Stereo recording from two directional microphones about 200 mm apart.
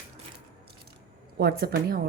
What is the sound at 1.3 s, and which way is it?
Speech, 55° right (ahead or behind).